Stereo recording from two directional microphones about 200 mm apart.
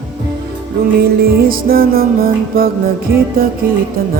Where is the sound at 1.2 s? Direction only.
50° right (ahead or behind).